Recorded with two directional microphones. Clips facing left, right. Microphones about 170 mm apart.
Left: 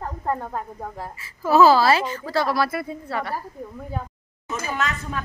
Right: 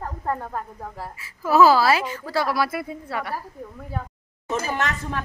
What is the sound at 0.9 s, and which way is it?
Speech, 5° right (ahead or behind).